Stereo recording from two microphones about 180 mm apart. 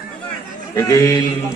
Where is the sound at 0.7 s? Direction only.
15° left (ahead or behind).